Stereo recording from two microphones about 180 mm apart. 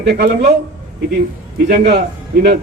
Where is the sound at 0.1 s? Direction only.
65° right (ahead or behind).